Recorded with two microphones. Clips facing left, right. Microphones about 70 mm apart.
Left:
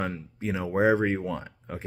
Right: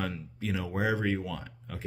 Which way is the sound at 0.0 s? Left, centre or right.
Left.